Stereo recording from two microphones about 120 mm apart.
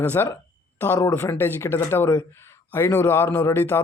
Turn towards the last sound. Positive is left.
turn(degrees=20)  # may be behind; listen again after turning